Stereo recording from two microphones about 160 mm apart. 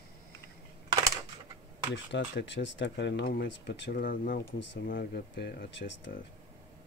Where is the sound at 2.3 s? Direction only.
90° left; by 4.4 s 60° left (ahead or behind).